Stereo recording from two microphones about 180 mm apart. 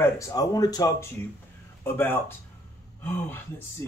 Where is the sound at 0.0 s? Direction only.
20° left (ahead or behind).